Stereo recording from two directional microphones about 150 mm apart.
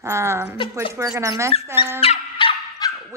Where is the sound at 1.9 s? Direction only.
40° left (ahead or behind).